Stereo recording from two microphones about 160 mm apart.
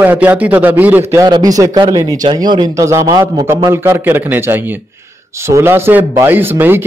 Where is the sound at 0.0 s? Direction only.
10° right (ahead or behind).